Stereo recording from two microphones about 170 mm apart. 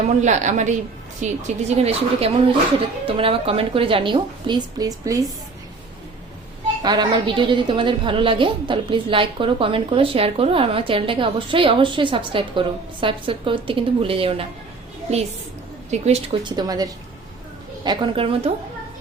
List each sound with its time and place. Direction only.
0.2 s a woman's voice: 45° right (ahead or behind); by 5.2 s 20° right (ahead or behind)
6.8 s a woman's voice: 25° right (ahead or behind)